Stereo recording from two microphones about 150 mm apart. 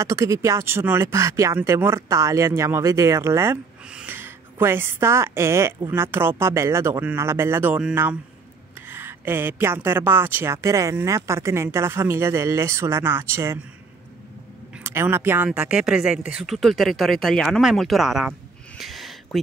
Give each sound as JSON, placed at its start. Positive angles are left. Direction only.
{"t": 0.0, "sound": "speech", "side_deg": -20}
{"t": 14.8, "sound": "speech", "side_deg": -15}
{"t": 18.8, "sound": "a sound", "side_deg": 0}